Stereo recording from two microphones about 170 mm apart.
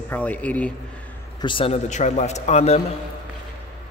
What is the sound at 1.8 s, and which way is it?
Speech, 45° left (ahead or behind).